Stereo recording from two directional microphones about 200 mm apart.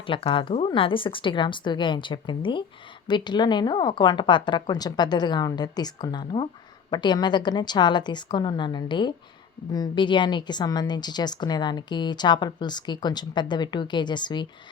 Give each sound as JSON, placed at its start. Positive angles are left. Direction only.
{"t": 0.0, "sound": "a woman's voice", "side_deg": 25}